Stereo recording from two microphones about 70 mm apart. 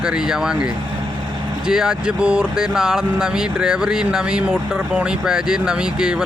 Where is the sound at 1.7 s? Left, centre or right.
Centre.